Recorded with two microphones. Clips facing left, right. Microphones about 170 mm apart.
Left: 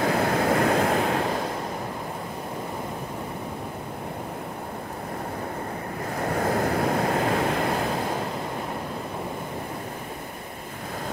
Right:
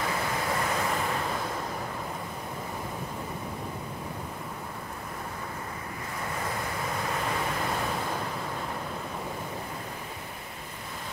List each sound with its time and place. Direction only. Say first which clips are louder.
0.0 s waves: left 8 dB; 60° left (ahead or behind)
6.1 s waves: left 10 dB; 55° left (ahead or behind)